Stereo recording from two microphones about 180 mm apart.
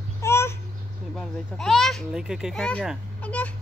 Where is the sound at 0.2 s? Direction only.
15° left (ahead or behind).